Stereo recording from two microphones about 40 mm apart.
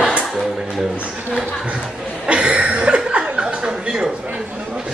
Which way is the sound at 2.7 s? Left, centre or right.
Right.